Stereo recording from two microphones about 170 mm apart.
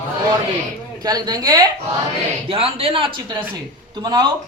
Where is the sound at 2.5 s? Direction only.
35° right (ahead or behind).